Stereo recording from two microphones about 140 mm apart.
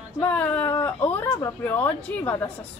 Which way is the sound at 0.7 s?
20° left (ahead or behind).